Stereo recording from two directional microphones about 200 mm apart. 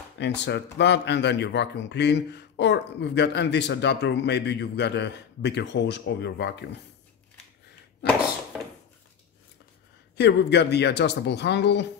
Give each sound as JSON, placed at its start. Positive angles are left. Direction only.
{"t": 0.2, "sound": "speech", "side_deg": 60}
{"t": 10.1, "sound": "speech", "side_deg": 55}